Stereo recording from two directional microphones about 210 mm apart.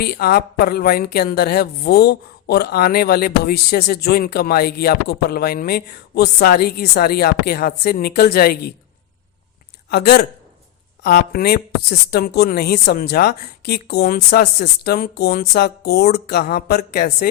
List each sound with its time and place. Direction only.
0.0 s a woman's voice: 45° left (ahead or behind)
9.9 s a woman's voice: 45° left (ahead or behind)